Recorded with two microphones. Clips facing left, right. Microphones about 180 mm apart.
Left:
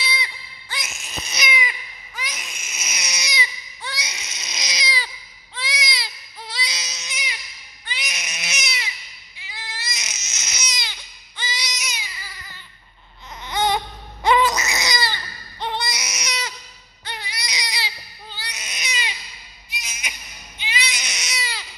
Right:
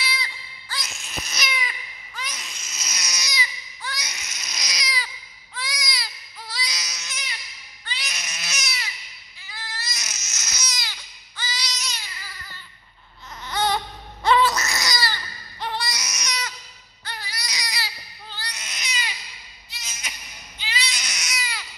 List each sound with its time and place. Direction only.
0.0 s baby cry: 20° left (ahead or behind)
11.8 s baby cry: 10° left (ahead or behind); by 21.6 s 25° left (ahead or behind)